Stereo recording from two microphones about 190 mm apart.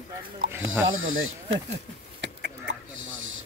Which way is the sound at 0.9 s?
90° right.